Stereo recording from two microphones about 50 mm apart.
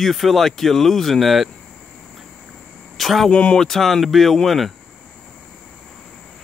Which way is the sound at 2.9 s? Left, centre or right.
Centre.